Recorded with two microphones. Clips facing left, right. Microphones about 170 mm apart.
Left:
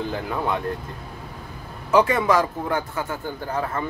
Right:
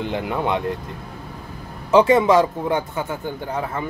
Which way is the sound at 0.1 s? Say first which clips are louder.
Right 3 dB; 20° right (ahead or behind).